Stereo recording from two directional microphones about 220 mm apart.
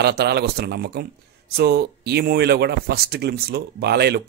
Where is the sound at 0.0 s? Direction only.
45° right (ahead or behind).